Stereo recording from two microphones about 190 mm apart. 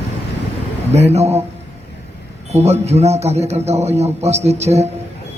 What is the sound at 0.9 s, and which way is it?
Speech, 35° right (ahead or behind).